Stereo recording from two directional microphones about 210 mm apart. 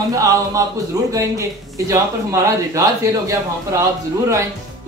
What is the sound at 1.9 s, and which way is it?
A man's voice, 15° right (ahead or behind).